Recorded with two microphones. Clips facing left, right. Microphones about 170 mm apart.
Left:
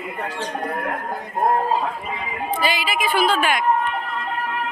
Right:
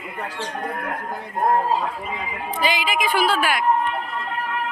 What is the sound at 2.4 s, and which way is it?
A woman's voice, 15° right (ahead or behind).